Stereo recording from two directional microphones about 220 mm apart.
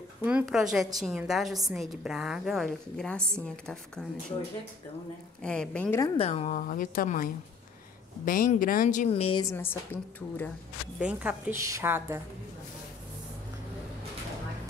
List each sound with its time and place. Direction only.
0.2 s a woman's voice: 5° right (ahead or behind)
5.4 s a woman's voice: 5° left (ahead or behind)
6.1 s speech: 30° left (ahead or behind)
8.3 s a woman's voice: 40° left (ahead or behind); by 10.5 s 10° left (ahead or behind)
11.0 s a woman's voice: 5° right (ahead or behind)